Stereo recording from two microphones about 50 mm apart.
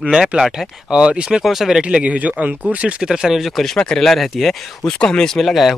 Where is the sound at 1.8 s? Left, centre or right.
Right.